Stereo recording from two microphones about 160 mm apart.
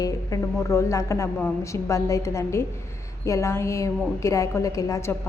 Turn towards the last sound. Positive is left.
turn(degrees=20)  # may be behind; listen again after turning